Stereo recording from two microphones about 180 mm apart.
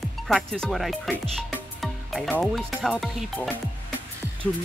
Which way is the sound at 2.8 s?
Centre (ahead or behind).